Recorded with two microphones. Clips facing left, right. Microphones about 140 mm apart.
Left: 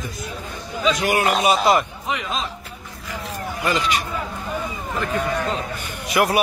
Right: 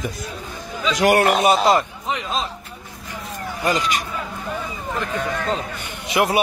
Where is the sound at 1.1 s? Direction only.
65° right (ahead or behind).